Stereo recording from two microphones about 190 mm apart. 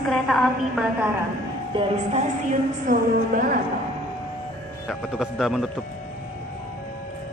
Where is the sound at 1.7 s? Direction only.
25° right (ahead or behind).